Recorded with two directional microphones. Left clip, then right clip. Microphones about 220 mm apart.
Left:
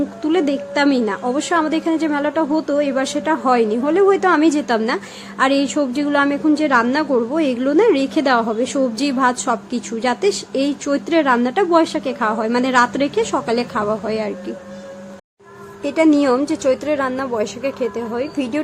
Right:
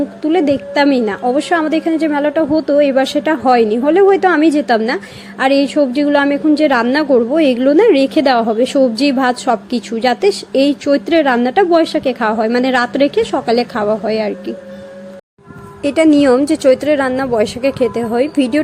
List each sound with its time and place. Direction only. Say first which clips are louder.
0.3 s a woman's voice: right 5 dB; 10° right (ahead or behind)
15.8 s a woman's voice: right 4 dB; 15° right (ahead or behind)